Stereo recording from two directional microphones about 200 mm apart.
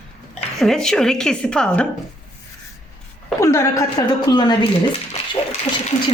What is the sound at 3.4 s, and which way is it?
Speech, 15° left (ahead or behind).